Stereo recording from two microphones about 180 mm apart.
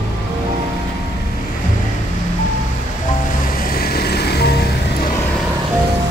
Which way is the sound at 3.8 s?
60° left (ahead or behind).